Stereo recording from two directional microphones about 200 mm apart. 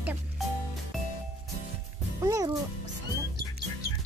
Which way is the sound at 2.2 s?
15° right (ahead or behind).